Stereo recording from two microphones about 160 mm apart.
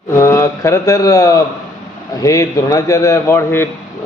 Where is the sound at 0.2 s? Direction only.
20° left (ahead or behind).